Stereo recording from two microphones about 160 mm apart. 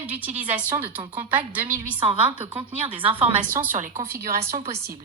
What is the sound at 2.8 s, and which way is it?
Speech, 35° right (ahead or behind).